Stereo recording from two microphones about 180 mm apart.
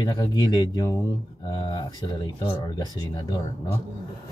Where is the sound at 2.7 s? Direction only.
20° left (ahead or behind).